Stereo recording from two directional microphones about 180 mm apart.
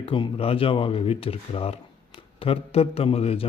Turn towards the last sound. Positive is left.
turn(degrees=35)  # may be behind; listen again after turning